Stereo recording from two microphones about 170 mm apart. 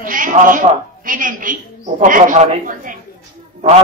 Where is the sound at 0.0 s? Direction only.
50° right (ahead or behind).